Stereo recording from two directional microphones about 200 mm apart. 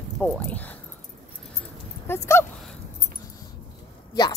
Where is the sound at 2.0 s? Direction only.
10° left (ahead or behind).